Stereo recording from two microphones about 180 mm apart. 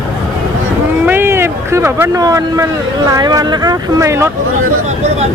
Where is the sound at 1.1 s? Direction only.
15° right (ahead or behind).